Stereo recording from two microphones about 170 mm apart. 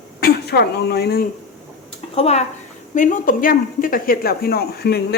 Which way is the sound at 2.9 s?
50° left (ahead or behind).